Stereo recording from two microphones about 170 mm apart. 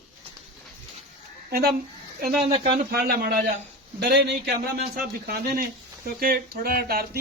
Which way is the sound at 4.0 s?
75° right (ahead or behind).